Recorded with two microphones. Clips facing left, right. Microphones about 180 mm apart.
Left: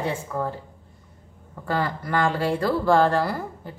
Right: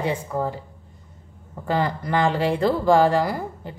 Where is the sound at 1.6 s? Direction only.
20° right (ahead or behind).